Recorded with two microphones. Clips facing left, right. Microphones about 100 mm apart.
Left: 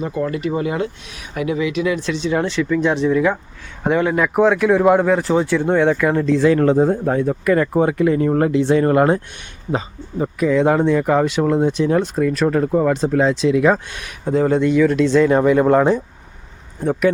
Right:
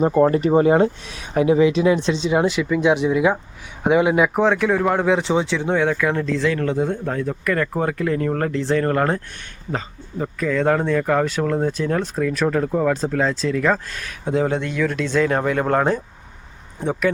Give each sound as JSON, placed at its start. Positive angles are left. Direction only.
{"t": 0.0, "sound": "speech", "side_deg": -40}
{"t": 4.4, "sound": "speech", "side_deg": 0}
{"t": 5.0, "sound": "speech", "side_deg": 0}
{"t": 6.4, "sound": "a man's voice", "side_deg": 30}
{"t": 7.1, "sound": "speech", "side_deg": 20}
{"t": 14.3, "sound": "speech", "side_deg": -5}